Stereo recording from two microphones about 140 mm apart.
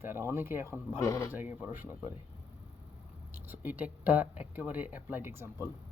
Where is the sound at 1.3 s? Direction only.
10° right (ahead or behind).